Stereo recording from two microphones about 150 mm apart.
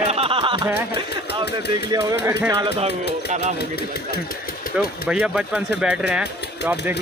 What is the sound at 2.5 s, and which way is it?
Speech, 40° right (ahead or behind).